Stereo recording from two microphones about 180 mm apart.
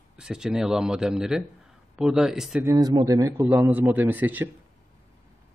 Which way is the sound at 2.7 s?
20° right (ahead or behind).